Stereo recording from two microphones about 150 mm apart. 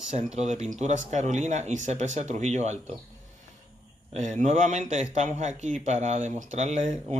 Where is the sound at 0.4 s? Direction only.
50° right (ahead or behind).